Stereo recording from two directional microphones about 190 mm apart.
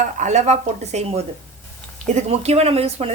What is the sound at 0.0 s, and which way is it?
A woman's voice, 40° right (ahead or behind).